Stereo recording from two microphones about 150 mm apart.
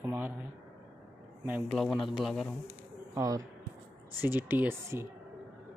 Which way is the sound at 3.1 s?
20° right (ahead or behind).